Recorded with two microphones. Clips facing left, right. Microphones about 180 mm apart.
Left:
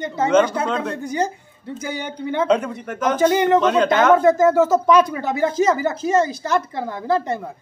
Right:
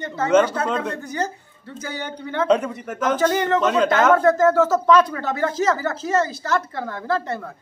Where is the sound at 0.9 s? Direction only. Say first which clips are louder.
Left 4 dB; 15° left (ahead or behind).